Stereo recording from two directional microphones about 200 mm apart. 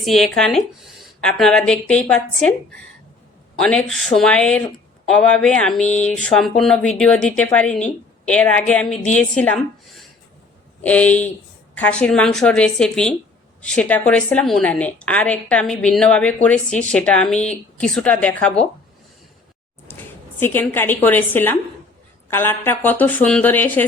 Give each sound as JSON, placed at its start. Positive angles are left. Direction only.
{"t": 0.0, "sound": "a woman's voice", "side_deg": 0}
{"t": 3.8, "sound": "a woman's voice", "side_deg": 0}
{"t": 10.8, "sound": "a woman's voice", "side_deg": 5}
{"t": 20.4, "sound": "a woman's voice", "side_deg": 10}